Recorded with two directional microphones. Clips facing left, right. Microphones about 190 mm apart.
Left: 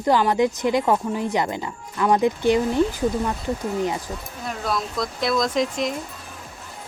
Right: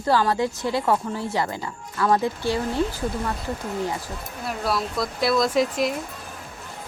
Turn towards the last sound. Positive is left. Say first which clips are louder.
# right 1 dB
turn(degrees=-5)  # may be behind; listen again after turning